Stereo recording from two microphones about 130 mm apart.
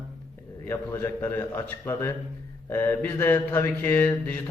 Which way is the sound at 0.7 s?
20° left (ahead or behind).